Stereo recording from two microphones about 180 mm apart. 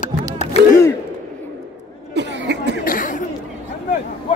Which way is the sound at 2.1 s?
75° right (ahead or behind).